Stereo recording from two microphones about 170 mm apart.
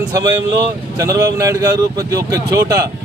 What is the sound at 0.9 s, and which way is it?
Speech, 20° right (ahead or behind).